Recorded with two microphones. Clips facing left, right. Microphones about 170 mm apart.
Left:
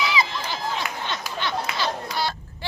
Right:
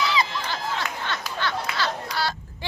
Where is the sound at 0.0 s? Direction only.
10° left (ahead or behind).